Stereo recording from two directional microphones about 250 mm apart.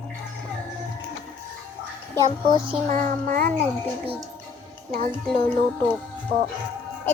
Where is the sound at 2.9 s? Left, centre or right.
Right.